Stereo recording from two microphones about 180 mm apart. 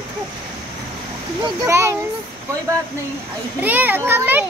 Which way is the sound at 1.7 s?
15° right (ahead or behind).